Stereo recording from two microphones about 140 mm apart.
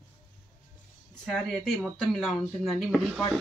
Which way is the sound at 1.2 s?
Centre (ahead or behind).